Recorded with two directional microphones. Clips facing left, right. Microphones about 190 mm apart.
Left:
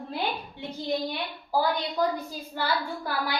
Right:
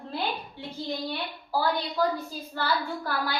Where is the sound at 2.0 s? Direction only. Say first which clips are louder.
Even; 20° left (ahead or behind).